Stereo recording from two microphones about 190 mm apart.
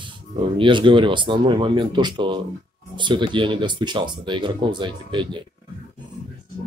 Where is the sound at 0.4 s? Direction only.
25° right (ahead or behind).